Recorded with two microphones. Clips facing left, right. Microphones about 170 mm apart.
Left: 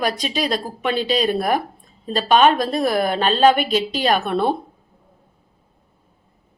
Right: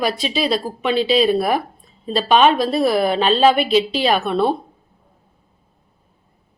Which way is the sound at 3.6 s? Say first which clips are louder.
Right 4 dB; 45° left (ahead or behind).